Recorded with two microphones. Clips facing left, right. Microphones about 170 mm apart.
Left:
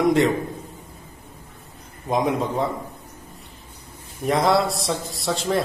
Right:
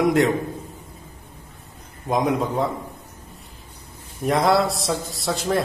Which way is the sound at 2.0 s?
Centre (ahead or behind).